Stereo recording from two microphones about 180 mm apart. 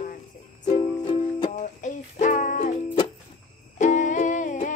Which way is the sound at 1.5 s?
45° left (ahead or behind).